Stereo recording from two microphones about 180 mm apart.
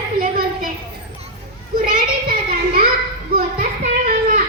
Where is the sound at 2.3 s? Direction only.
55° right (ahead or behind).